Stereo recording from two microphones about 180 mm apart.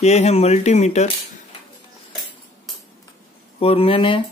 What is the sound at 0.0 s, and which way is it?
Speech, 35° left (ahead or behind).